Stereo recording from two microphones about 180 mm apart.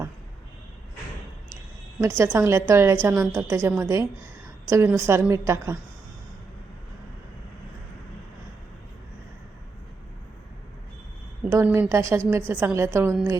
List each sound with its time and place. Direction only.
2.0 s a woman's voice: 15° right (ahead or behind)
11.5 s a woman's voice: 10° right (ahead or behind)